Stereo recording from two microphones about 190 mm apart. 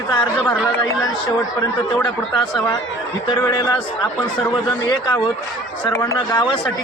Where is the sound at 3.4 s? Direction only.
20° left (ahead or behind).